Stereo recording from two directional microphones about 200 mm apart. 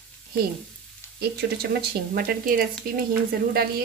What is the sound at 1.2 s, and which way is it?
Speech, 55° right (ahead or behind).